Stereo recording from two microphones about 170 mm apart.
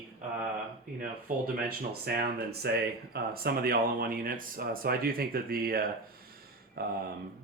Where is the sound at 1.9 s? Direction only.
70° right (ahead or behind).